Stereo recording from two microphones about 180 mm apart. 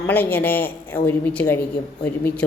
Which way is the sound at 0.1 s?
10° left (ahead or behind).